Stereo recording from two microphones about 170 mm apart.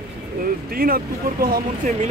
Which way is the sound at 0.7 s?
60° right (ahead or behind).